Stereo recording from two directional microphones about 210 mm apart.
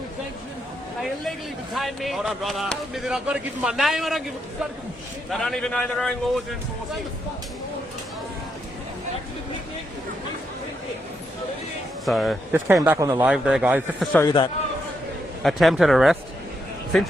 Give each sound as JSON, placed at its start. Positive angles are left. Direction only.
{"t": 1.7, "sound": "speech", "side_deg": 0}
{"t": 5.3, "sound": "speech", "side_deg": 0}
{"t": 12.0, "sound": "speech", "side_deg": 0}
{"t": 14.0, "sound": "speech", "side_deg": 0}
{"t": 14.3, "sound": "speech", "side_deg": 20}
{"t": 15.4, "sound": "speech", "side_deg": 0}